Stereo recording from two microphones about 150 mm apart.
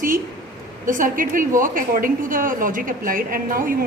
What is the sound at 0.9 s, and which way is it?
A woman's voice, 65° right (ahead or behind).